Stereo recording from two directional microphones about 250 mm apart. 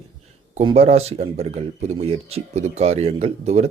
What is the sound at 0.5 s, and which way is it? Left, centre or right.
Speech, right.